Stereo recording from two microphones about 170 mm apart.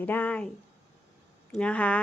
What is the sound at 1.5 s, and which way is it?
Speech, 5° left (ahead or behind).